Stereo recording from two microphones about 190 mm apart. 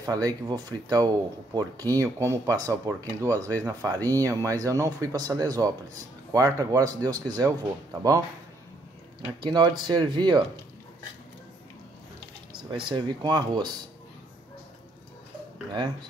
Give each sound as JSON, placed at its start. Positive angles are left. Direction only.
{"t": 0.0, "sound": "speech", "side_deg": -20}
{"t": 9.4, "sound": "speech", "side_deg": -20}
{"t": 12.7, "sound": "speech", "side_deg": -25}